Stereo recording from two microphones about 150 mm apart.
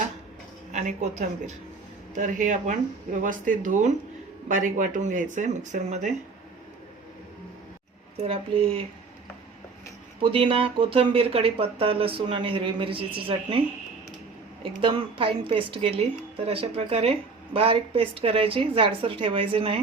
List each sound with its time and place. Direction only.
0.7 s a woman's voice: 55° right (ahead or behind)
8.2 s speech: 40° right (ahead or behind)
10.2 s speech: 35° right (ahead or behind)
14.6 s speech: 35° right (ahead or behind)